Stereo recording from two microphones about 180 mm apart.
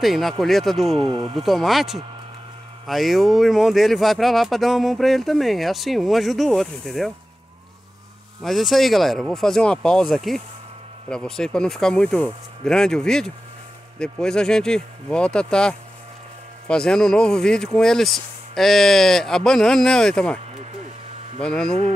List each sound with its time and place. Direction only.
0.0 s speech: centre (ahead or behind)
1.0 s speech: 25° right (ahead or behind)
1.4 s speech: centre (ahead or behind)
8.4 s speech: centre (ahead or behind)
21.4 s speech: 5° left (ahead or behind)